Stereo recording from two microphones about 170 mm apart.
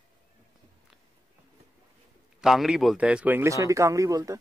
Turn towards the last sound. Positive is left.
turn(degrees=-20)  # may be behind; listen again after turning